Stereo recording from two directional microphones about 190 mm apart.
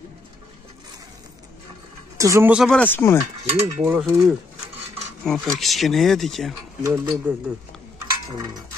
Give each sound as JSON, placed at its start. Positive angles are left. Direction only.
{"t": 2.1, "sound": "speech", "side_deg": -15}
{"t": 2.5, "sound": "speech", "side_deg": 0}
{"t": 3.6, "sound": "speech", "side_deg": -5}
{"t": 6.8, "sound": "speech", "side_deg": -15}